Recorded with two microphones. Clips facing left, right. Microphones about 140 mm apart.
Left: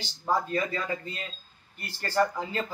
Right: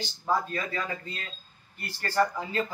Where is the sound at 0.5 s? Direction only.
25° left (ahead or behind).